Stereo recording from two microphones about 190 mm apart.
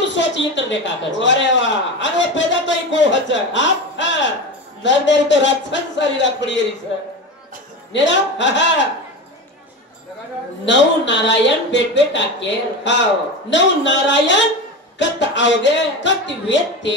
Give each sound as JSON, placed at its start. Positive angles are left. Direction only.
{"t": 0.0, "sound": "a man's voice", "side_deg": 70}
{"t": 7.9, "sound": "a man's voice", "side_deg": 70}
{"t": 10.6, "sound": "a man's voice", "side_deg": 70}